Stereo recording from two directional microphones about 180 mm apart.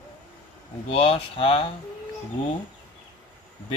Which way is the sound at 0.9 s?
30° left (ahead or behind).